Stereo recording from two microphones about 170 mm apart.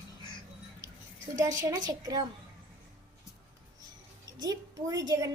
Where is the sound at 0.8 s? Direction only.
20° right (ahead or behind).